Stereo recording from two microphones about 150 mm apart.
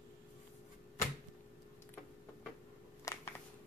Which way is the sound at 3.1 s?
20° left (ahead or behind).